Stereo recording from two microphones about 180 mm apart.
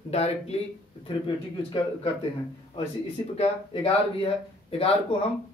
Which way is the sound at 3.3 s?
35° left (ahead or behind).